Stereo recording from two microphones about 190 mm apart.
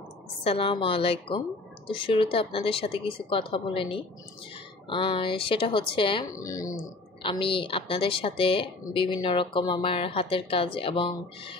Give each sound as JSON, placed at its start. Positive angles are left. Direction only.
{"t": 0.4, "sound": "speech", "side_deg": 30}